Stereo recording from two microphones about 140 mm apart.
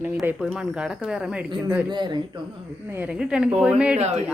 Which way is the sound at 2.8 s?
15° right (ahead or behind).